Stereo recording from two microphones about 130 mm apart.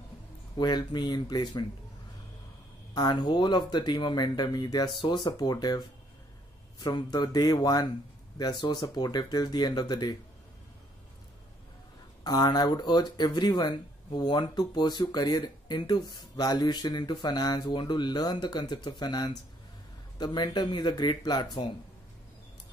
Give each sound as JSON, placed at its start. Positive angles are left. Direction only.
{"t": 0.6, "sound": "speech", "side_deg": 35}
{"t": 2.9, "sound": "speech", "side_deg": 30}
{"t": 12.2, "sound": "speech", "side_deg": 30}